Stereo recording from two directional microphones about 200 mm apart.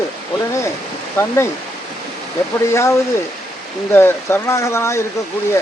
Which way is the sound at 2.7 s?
15° left (ahead or behind).